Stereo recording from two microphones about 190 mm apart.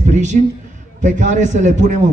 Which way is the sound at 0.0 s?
40° right (ahead or behind).